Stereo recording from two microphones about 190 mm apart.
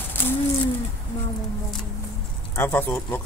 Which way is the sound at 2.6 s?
10° left (ahead or behind).